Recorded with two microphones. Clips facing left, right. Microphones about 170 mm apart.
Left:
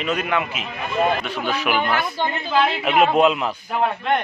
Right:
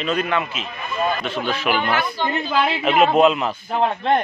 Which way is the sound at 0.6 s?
75° left (ahead or behind).